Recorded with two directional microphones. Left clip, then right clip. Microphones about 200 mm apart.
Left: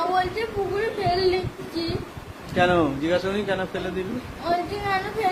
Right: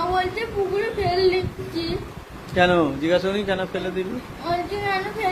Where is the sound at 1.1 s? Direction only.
15° left (ahead or behind).